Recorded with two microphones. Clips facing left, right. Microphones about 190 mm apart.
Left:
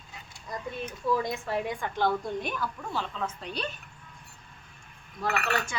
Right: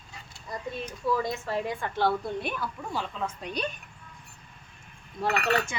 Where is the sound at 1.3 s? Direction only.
Centre (ahead or behind).